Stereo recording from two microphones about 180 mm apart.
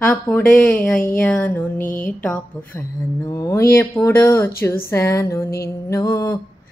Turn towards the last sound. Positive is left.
turn(degrees=15)  # may be behind; listen again after turning